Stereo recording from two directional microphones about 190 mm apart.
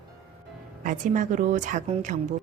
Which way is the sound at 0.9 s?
40° right (ahead or behind).